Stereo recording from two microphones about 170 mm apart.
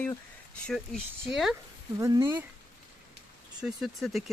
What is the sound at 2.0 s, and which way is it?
Speech, 25° right (ahead or behind).